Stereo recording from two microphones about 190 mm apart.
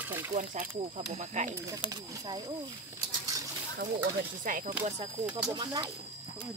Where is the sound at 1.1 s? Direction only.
40° right (ahead or behind).